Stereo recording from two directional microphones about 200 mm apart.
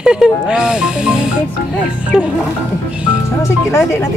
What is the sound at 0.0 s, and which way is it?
Speech, 5° right (ahead or behind).